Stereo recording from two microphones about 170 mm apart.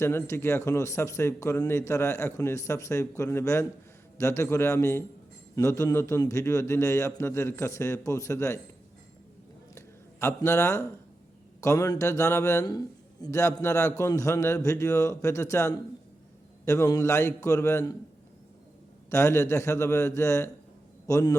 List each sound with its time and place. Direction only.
0.0 s a man's voice: 15° left (ahead or behind)
9.7 s a sound: 15° left (ahead or behind)
11.6 s a man's voice: 20° left (ahead or behind)
19.1 s a man's voice: 15° left (ahead or behind)